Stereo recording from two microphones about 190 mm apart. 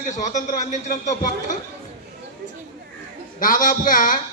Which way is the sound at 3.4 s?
45° left (ahead or behind).